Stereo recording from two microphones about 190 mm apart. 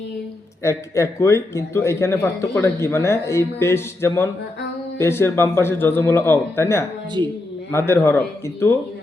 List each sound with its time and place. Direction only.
0.6 s a man's voice: 15° left (ahead or behind)